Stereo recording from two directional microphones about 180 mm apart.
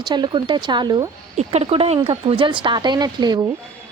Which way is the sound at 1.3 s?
35° right (ahead or behind).